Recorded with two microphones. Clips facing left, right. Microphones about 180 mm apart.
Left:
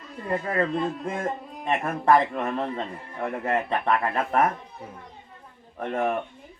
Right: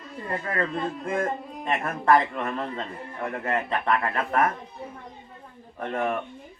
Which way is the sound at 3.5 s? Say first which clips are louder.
Left 1 dB; 20° left (ahead or behind).